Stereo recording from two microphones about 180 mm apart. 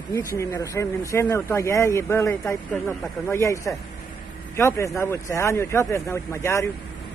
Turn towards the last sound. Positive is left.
turn(degrees=15)  # may be behind; listen again after turning